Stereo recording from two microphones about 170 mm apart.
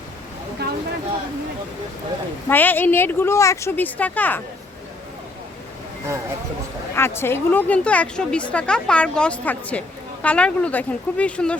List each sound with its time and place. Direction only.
0.6 s a sound: 70° right (ahead or behind)
2.5 s speech: 10° left (ahead or behind)
6.9 s speech: 15° left (ahead or behind)